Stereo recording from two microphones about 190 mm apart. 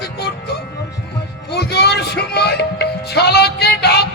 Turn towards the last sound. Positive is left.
turn(degrees=60)  # may be behind; listen again after turning